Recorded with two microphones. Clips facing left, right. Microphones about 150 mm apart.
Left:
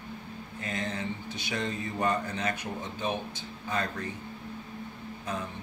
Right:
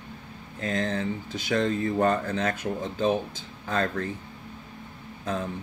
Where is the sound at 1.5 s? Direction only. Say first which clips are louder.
Right 9 dB; 50° right (ahead or behind).